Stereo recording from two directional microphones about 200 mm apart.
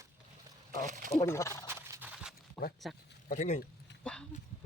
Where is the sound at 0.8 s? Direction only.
40° right (ahead or behind).